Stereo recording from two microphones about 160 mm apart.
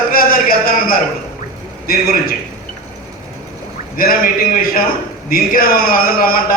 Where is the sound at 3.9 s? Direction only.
60° left (ahead or behind).